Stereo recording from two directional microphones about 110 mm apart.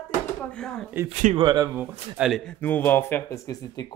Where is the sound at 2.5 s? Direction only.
15° left (ahead or behind).